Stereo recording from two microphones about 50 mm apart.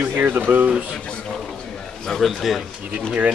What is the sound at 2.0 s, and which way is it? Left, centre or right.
Speech, centre.